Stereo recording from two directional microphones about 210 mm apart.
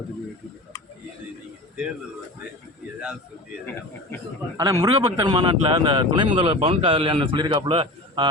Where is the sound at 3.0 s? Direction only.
5° right (ahead or behind).